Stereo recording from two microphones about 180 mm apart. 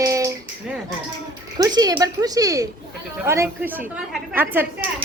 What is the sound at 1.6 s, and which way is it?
A woman's voice, 20° right (ahead or behind).